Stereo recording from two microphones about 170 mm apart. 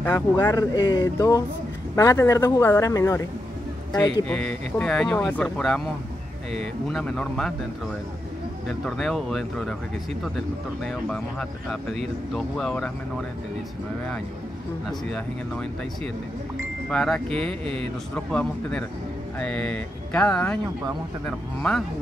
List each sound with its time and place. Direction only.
0.0 s speech: 15° left (ahead or behind)
3.9 s speech: 5° left (ahead or behind)
8.6 s speech: centre (ahead or behind)
11.1 s speech: centre (ahead or behind)
14.9 s speech: 5° left (ahead or behind)
16.9 s speech: 5° left (ahead or behind)